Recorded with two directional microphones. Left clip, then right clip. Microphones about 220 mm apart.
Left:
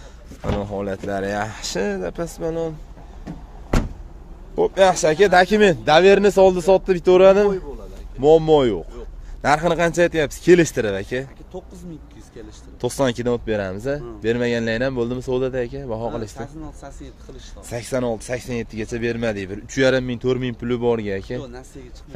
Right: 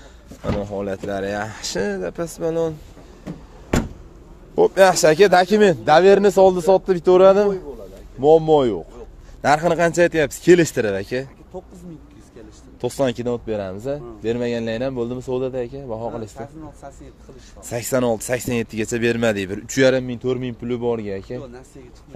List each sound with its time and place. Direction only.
0.6 s a man's voice: 5° left (ahead or behind); by 2.7 s 10° right (ahead or behind)
4.6 s a man's voice: 20° right (ahead or behind); by 8.8 s 5° left (ahead or behind)
9.4 s a man's voice: 5° right (ahead or behind)
11.5 s speech: 40° left (ahead or behind)
12.8 s a man's voice: 10° left (ahead or behind)
17.6 s speech: 15° right (ahead or behind)
20.0 s a man's voice: 10° left (ahead or behind)